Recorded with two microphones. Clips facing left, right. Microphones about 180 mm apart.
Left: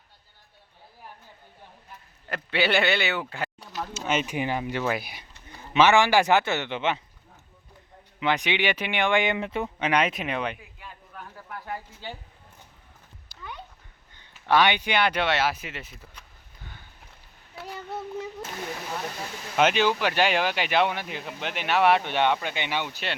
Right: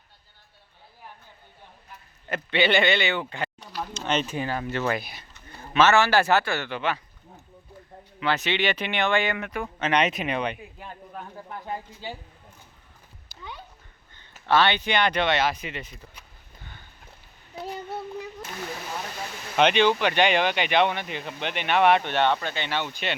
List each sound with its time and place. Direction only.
2.3 s speech: 5° left (ahead or behind); by 7.0 s 20° left (ahead or behind)
8.2 s speech: 15° left (ahead or behind)
9.7 s speech: 10° left (ahead or behind)
10.8 s a sound: 40° right (ahead or behind)
11.3 s a man's voice: 20° right (ahead or behind)
13.3 s a sound: 5° right (ahead or behind)
14.4 s speech: 15° left (ahead or behind)
17.5 s child singing: 20° right (ahead or behind)
19.5 s speech: 5° left (ahead or behind)